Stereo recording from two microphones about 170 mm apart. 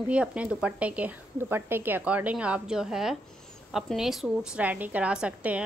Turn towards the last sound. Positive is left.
turn(degrees=-5)  # may be behind; listen again after turning